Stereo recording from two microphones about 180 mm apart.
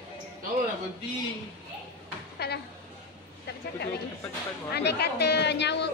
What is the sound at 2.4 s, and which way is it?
Speech, 65° left (ahead or behind).